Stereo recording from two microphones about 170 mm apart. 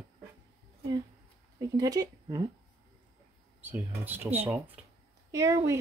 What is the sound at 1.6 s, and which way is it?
Speech, 20° right (ahead or behind).